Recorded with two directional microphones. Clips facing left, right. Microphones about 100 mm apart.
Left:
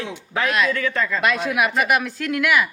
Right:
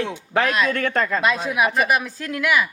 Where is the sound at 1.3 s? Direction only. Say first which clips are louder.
Even; 30° right (ahead or behind).